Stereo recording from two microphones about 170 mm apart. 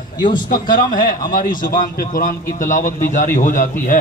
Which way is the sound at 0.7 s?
55° left (ahead or behind).